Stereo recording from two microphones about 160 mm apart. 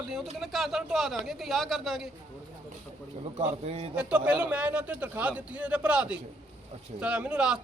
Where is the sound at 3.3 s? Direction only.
40° right (ahead or behind).